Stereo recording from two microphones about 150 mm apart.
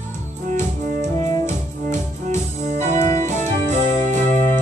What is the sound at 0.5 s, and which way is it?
Music, 55° right (ahead or behind).